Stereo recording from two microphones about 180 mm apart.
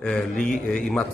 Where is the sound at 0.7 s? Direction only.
5° left (ahead or behind).